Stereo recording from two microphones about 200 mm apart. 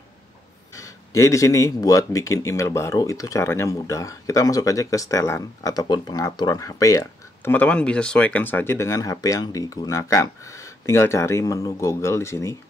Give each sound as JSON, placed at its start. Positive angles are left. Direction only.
{"t": 0.7, "sound": "speech", "side_deg": 15}